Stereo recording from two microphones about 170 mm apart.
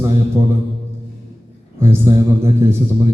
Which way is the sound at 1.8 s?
15° right (ahead or behind).